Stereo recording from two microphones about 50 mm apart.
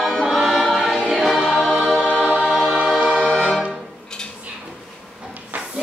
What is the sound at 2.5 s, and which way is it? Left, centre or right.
Choir, centre.